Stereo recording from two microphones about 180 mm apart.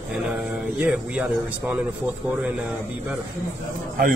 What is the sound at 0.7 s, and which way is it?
Speech, 5° right (ahead or behind).